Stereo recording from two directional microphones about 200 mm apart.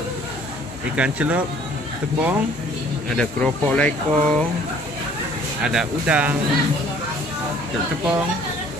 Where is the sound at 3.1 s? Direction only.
5° left (ahead or behind).